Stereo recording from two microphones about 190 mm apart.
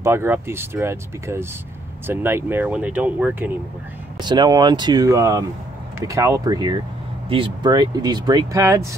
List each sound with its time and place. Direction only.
0.0 s speech: 15° right (ahead or behind)
4.2 s speech: 20° right (ahead or behind)